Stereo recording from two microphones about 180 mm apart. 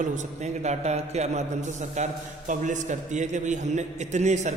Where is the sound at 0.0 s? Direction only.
40° right (ahead or behind).